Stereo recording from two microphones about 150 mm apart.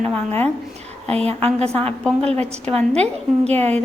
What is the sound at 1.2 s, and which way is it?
A woman's voice, 45° right (ahead or behind).